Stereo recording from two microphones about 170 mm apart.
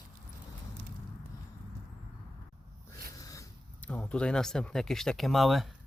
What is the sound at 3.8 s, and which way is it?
Speech, 5° left (ahead or behind).